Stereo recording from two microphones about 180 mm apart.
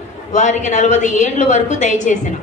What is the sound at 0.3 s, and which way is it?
A woman's voice, 40° left (ahead or behind).